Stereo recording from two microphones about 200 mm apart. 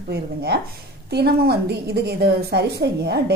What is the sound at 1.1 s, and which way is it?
A woman's voice, 55° right (ahead or behind).